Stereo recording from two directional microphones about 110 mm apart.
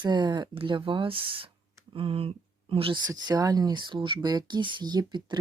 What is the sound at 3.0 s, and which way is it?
Speech, 40° right (ahead or behind).